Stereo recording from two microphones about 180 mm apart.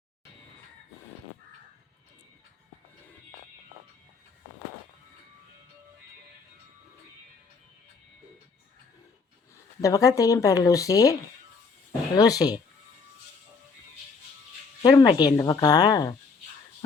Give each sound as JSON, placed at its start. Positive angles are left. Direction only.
{"t": 9.8, "sound": "speech", "side_deg": 20}
{"t": 14.8, "sound": "speech", "side_deg": 25}